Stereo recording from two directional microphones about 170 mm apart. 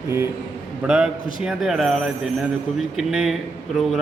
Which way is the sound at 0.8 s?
5° right (ahead or behind).